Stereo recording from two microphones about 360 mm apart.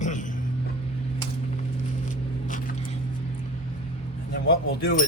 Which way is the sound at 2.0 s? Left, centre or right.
Left.